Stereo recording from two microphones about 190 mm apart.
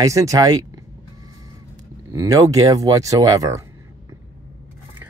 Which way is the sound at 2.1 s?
15° right (ahead or behind).